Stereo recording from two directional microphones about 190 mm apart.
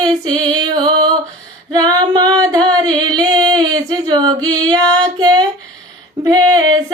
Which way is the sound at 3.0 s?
20° right (ahead or behind).